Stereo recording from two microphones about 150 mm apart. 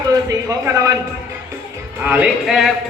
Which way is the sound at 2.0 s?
10° right (ahead or behind).